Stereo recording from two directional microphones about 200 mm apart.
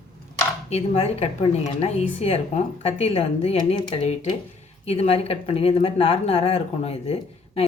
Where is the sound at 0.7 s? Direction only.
30° left (ahead or behind).